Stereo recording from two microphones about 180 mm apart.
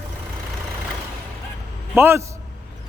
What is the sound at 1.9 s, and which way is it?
Speech, 15° right (ahead or behind).